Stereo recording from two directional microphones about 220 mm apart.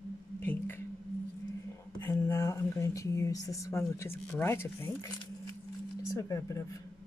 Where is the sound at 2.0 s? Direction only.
10° left (ahead or behind).